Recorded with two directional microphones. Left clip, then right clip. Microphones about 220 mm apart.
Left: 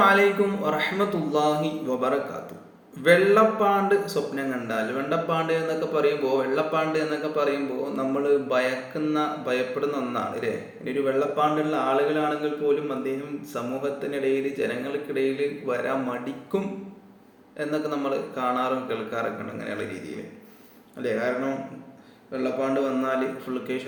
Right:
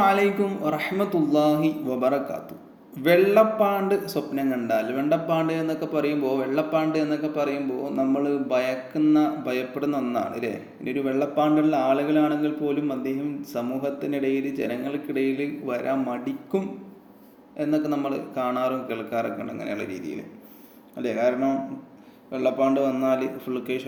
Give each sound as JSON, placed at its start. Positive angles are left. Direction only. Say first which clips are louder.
{"t": 0.0, "sound": "mantra", "louder": "left 2 dB", "side_deg": -40}
{"t": 21.0, "sound": "mantra", "louder": "right 3 dB", "side_deg": -45}
{"t": 22.3, "sound": "a man's voice", "louder": "right 4 dB", "side_deg": -40}